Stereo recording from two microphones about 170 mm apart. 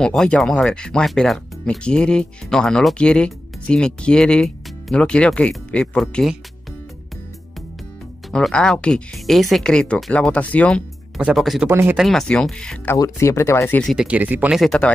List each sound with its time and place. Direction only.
0.0 s speech: 5° left (ahead or behind)
8.3 s speech: 5° left (ahead or behind)
11.1 s speech: 5° right (ahead or behind)
11.7 s speech: 15° right (ahead or behind)
12.0 s speech: centre (ahead or behind)
12.9 s speech: 20° left (ahead or behind)
13.9 s speech: 10° right (ahead or behind)